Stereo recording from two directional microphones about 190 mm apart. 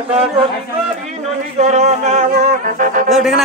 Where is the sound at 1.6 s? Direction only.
35° right (ahead or behind).